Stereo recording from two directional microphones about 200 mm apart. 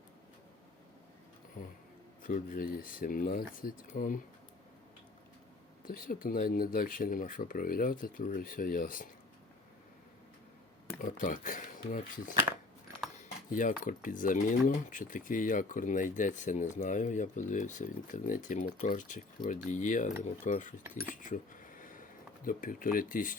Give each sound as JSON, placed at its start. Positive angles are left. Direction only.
{"t": 1.6, "sound": "speech", "side_deg": 40}
{"t": 5.8, "sound": "speech", "side_deg": 45}
{"t": 11.0, "sound": "speech", "side_deg": 40}
{"t": 13.5, "sound": "speech", "side_deg": 40}
{"t": 21.2, "sound": "a sound", "side_deg": 40}
{"t": 22.4, "sound": "speech", "side_deg": 45}